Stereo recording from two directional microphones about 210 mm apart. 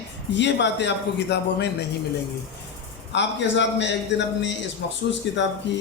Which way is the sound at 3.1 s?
55° left (ahead or behind).